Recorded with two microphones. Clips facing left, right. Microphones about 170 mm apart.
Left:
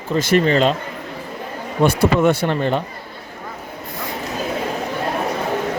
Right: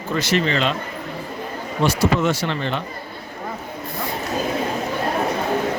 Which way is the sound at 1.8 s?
55° left (ahead or behind).